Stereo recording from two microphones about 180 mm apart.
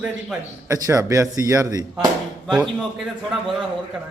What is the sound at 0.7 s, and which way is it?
A man's voice, 15° right (ahead or behind).